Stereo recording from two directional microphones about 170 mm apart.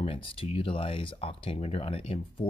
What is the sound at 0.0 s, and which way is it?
Speech, 35° left (ahead or behind).